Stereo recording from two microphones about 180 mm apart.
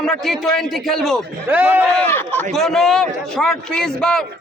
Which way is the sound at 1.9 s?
10° left (ahead or behind).